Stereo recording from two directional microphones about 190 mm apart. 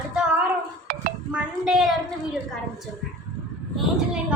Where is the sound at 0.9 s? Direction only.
50° right (ahead or behind).